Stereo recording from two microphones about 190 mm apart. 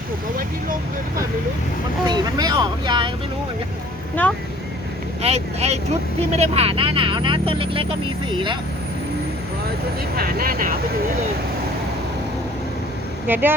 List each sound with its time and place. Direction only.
2.0 s speech: 20° right (ahead or behind)
4.1 s speech: 10° left (ahead or behind)
5.2 s speech: 35° right (ahead or behind)
10.2 s speech: 50° right (ahead or behind)
13.2 s speech: 10° right (ahead or behind)